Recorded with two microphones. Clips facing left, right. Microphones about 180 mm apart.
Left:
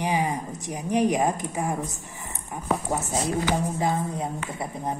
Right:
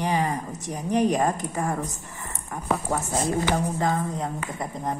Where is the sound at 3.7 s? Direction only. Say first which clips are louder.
Even; 15° left (ahead or behind).